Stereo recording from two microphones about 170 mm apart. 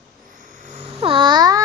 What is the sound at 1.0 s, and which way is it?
Babbling, 30° right (ahead or behind).